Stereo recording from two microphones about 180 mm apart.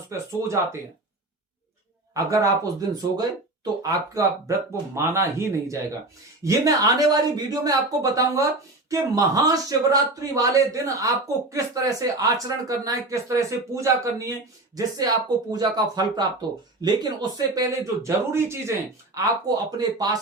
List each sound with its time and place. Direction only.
0.1 s speech: 15° right (ahead or behind)
2.1 s a man's voice: 20° right (ahead or behind)
19.7 s a man's voice: 20° right (ahead or behind)